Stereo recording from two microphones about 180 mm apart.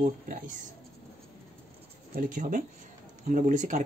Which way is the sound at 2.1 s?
50° right (ahead or behind).